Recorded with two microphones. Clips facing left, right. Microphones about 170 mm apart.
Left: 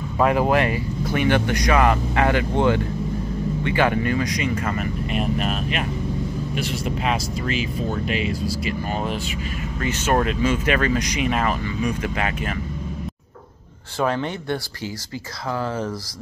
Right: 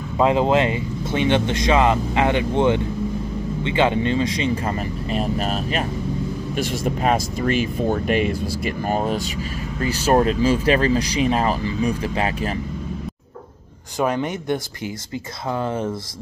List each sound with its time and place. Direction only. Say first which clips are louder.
0.2 s speech: right 2 dB; 20° right (ahead or behind)
13.9 s a man's voice: right 1 dB; 15° right (ahead or behind)